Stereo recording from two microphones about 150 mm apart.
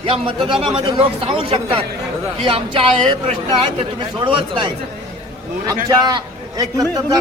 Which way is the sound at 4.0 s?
35° right (ahead or behind).